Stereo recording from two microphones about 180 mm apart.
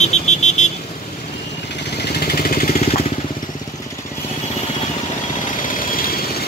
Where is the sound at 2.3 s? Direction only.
55° left (ahead or behind).